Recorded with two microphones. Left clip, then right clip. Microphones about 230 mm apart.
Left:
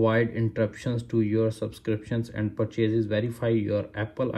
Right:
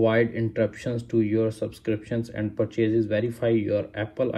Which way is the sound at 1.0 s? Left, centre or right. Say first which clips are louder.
Right 2 dB; centre.